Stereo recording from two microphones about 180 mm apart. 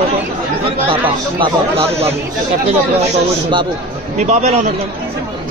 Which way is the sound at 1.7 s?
35° right (ahead or behind).